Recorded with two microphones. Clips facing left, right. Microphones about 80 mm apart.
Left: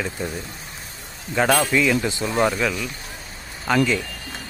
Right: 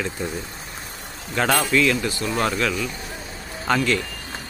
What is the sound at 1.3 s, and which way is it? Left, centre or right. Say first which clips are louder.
Speech: left 1 dB; centre.